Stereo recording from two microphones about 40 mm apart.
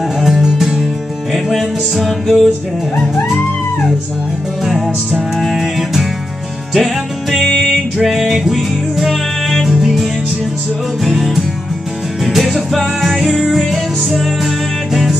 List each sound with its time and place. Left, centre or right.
0.6 s music: centre
1.3 s music: centre
5.4 s music: centre
7.4 s music: centre
8.0 s music: centre
11.1 s music: centre